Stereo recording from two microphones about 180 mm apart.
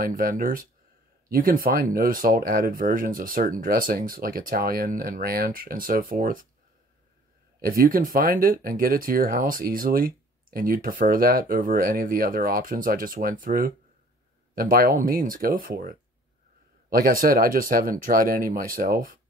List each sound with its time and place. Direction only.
0.0 s speech: 50° right (ahead or behind)
7.6 s speech: 50° right (ahead or behind)